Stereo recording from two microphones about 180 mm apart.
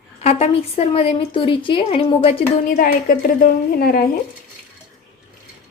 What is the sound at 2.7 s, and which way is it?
A woman's voice, 50° left (ahead or behind).